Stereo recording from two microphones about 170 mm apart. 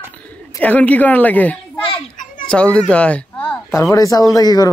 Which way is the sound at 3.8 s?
20° left (ahead or behind).